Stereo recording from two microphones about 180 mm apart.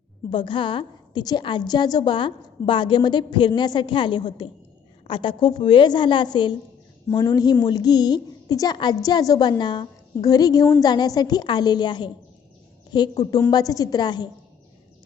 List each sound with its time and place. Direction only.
0.3 s a woman's voice: 25° left (ahead or behind)
13.5 s a woman's voice: 20° left (ahead or behind)